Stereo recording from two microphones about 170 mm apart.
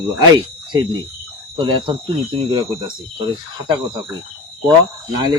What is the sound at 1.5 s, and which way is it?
Speech, 30° right (ahead or behind).